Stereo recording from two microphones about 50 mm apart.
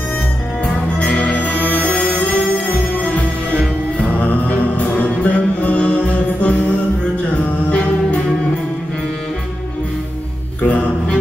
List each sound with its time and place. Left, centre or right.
0.7 s music: left
4.1 s music: left
10.6 s music: left